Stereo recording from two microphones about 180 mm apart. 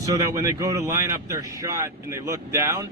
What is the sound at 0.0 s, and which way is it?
Speech, 20° right (ahead or behind).